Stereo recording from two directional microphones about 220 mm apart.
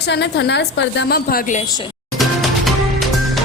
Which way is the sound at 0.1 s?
50° left (ahead or behind).